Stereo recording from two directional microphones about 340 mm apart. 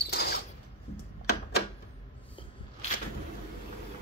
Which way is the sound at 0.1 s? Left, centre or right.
Left.